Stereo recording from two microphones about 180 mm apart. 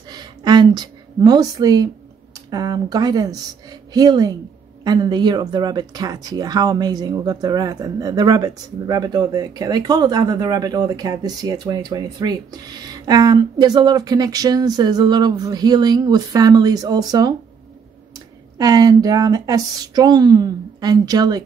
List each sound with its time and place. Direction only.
0.1 s a woman's voice: 20° right (ahead or behind)
18.6 s speech: 20° right (ahead or behind)